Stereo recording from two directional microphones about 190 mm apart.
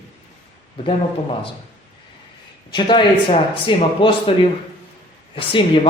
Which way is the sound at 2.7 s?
25° left (ahead or behind).